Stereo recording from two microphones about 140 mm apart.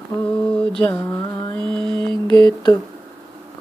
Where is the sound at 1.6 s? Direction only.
35° right (ahead or behind).